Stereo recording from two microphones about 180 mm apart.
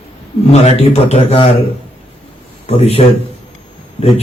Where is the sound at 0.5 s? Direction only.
35° left (ahead or behind).